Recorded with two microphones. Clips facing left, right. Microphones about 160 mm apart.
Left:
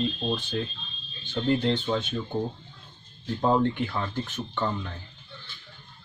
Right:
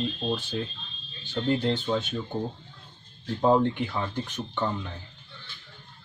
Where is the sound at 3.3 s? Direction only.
10° right (ahead or behind).